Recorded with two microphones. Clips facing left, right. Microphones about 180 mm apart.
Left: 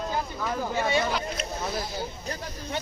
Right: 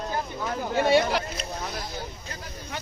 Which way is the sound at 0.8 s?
65° right (ahead or behind).